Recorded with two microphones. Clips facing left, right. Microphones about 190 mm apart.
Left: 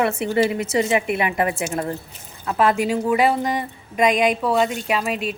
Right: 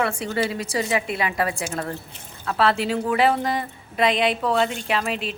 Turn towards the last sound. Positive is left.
turn(degrees=10)  # may be behind; listen again after turning